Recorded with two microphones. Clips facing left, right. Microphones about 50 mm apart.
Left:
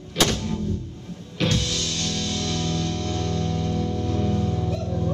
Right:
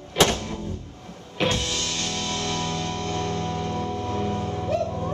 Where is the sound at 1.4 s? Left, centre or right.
Right.